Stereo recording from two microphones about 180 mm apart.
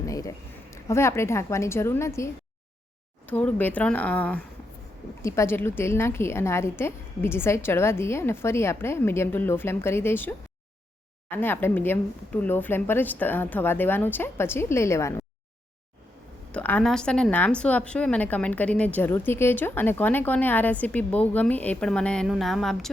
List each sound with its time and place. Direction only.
0.0 s a woman's voice: 20° left (ahead or behind)
16.5 s a woman's voice: 10° left (ahead or behind)